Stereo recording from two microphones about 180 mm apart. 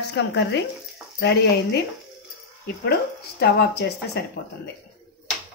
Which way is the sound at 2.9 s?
65° left (ahead or behind).